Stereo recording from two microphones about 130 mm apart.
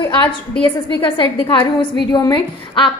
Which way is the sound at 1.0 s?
40° left (ahead or behind).